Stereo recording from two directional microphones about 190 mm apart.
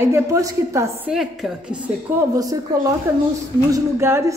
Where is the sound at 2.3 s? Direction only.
20° right (ahead or behind).